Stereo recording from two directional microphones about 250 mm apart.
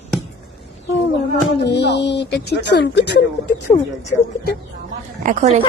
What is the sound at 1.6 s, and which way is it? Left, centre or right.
Speech, left.